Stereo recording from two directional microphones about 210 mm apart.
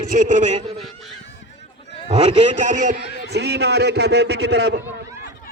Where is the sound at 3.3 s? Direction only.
50° right (ahead or behind).